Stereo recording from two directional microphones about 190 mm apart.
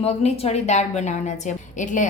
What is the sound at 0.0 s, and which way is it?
A woman's voice, 35° left (ahead or behind).